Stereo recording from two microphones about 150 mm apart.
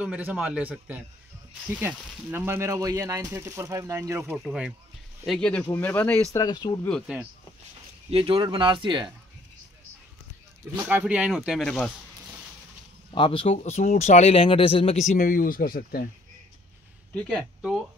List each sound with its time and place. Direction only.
0.0 s a man's voice: 10° right (ahead or behind)
4.4 s speech: 5° right (ahead or behind); by 6.4 s 10° left (ahead or behind)
6.4 s speech: 30° left (ahead or behind)
8.1 s speech: 35° right (ahead or behind)
10.8 s a man's voice: 10° right (ahead or behind)
11.6 s speech: 5° left (ahead or behind)
13.1 s speech: 35° left (ahead or behind); by 16.1 s 80° left
17.1 s speech: 5° left (ahead or behind)
17.6 s speech: 5° right (ahead or behind)